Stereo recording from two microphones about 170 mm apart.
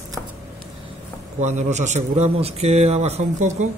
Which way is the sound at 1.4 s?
45° right (ahead or behind).